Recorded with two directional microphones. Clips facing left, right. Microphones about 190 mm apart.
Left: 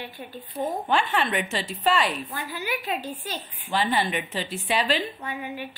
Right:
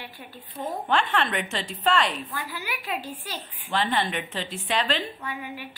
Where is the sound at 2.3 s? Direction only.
20° left (ahead or behind).